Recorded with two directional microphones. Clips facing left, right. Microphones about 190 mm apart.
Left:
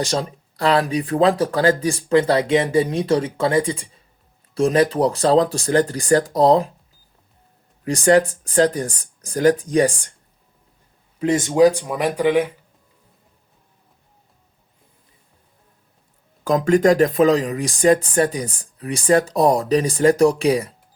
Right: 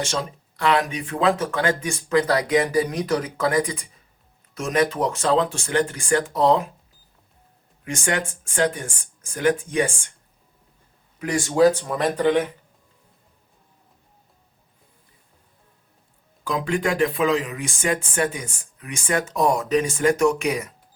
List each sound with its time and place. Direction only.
0.0 s speech: 35° left (ahead or behind)
7.9 s speech: 35° left (ahead or behind)
11.2 s speech: 25° left (ahead or behind)
16.4 s speech: 45° left (ahead or behind)